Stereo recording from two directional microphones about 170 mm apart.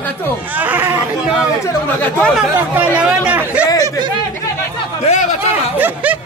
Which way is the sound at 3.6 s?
20° left (ahead or behind).